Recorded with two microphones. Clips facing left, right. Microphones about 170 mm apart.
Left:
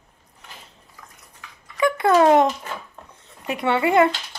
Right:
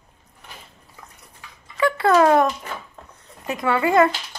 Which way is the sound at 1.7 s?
20° left (ahead or behind).